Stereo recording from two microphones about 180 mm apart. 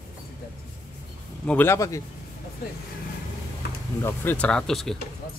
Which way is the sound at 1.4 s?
10° left (ahead or behind).